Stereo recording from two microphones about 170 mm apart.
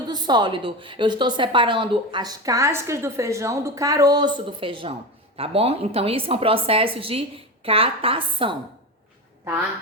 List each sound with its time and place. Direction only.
0.1 s a woman's voice: 25° right (ahead or behind)
9.4 s speech: 15° right (ahead or behind)